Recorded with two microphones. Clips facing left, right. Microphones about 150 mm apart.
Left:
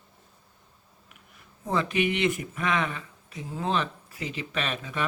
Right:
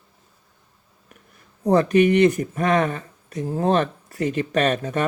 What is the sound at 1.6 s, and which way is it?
Speech, 45° right (ahead or behind).